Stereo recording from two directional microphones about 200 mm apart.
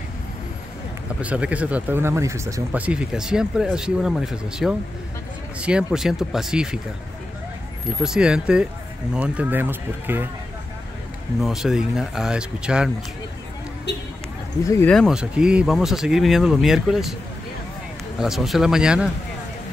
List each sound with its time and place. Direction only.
1.2 s speech: 5° right (ahead or behind)
8.0 s speech: 5° right (ahead or behind)
11.4 s speech: centre (ahead or behind)
13.9 s vehicle: 60° left (ahead or behind)
14.6 s speech: 15° left (ahead or behind); by 17.1 s centre (ahead or behind)
18.2 s speech: centre (ahead or behind)